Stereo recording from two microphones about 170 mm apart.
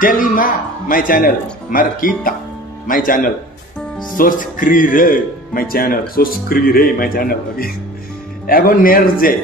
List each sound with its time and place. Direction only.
0.0 s speech: 55° left (ahead or behind)